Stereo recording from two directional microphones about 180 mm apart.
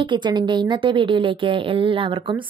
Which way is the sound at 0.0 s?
25° right (ahead or behind).